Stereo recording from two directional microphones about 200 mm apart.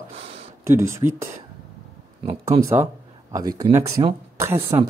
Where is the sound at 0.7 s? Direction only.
15° right (ahead or behind).